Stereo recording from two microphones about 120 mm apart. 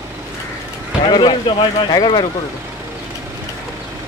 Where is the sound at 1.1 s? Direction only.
45° left (ahead or behind).